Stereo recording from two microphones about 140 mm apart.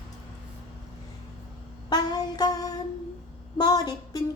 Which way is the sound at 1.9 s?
30° left (ahead or behind).